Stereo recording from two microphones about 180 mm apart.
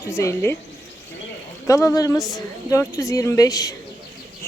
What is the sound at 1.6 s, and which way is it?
Speech, 20° left (ahead or behind).